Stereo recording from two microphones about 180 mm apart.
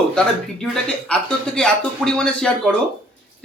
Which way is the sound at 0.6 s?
5° left (ahead or behind).